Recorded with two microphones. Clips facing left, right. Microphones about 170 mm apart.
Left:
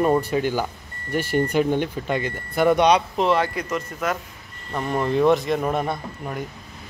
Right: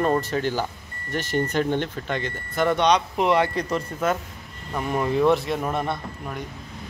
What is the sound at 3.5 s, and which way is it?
Speech, 35° right (ahead or behind).